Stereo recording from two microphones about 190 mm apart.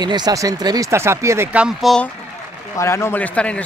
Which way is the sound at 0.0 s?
20° right (ahead or behind).